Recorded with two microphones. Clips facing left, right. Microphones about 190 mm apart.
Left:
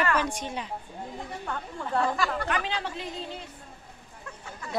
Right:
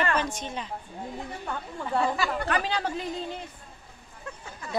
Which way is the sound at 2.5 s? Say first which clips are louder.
Right 3 dB; 40° right (ahead or behind).